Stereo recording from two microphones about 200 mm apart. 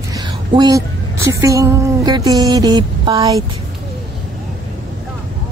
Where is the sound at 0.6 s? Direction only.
15° right (ahead or behind).